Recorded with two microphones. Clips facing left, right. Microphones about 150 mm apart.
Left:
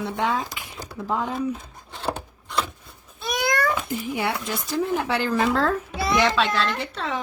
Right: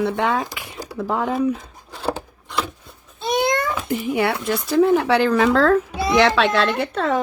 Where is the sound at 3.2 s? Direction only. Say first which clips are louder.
Right 4 dB; 25° right (ahead or behind).